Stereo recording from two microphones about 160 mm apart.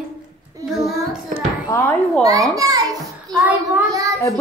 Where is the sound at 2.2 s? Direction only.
20° right (ahead or behind).